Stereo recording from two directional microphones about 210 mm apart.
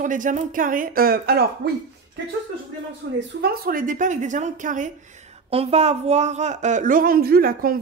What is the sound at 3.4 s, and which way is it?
Speech, 45° right (ahead or behind).